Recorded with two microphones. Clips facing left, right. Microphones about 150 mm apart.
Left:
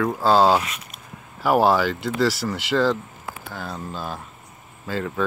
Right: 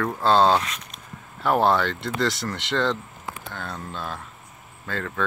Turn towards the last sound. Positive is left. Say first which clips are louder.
# left 3 dB
turn(degrees=5)  # may be behind; listen again after turning